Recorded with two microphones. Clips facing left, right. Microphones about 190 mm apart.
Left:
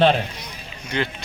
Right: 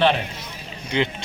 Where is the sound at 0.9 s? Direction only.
15° right (ahead or behind).